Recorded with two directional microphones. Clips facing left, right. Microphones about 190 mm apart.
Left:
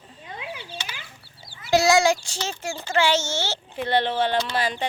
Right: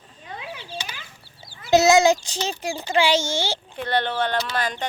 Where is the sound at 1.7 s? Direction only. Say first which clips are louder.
Right 3 dB; 20° right (ahead or behind).